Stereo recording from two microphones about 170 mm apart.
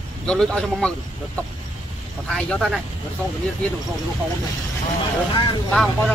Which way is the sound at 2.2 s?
5° left (ahead or behind).